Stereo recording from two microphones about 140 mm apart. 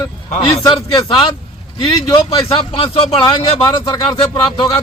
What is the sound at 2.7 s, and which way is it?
A man's voice, 40° left (ahead or behind).